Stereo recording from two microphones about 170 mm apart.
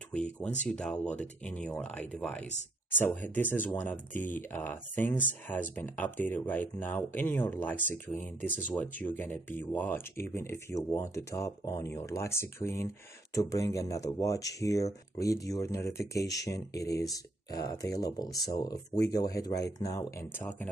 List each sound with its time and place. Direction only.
0.7 s speech: 5° left (ahead or behind)